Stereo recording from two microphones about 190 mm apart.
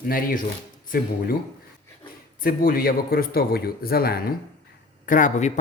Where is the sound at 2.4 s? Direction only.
50° left (ahead or behind).